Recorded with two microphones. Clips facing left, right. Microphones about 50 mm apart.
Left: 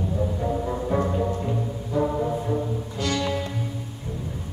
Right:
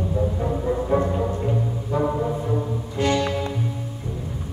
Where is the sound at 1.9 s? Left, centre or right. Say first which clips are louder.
Right 1 dB; right.